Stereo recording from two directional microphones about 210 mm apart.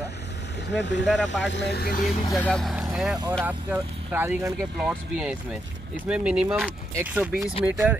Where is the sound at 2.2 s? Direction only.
15° left (ahead or behind).